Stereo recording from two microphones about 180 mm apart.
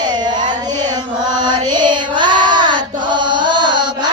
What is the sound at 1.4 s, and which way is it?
Music, 25° right (ahead or behind).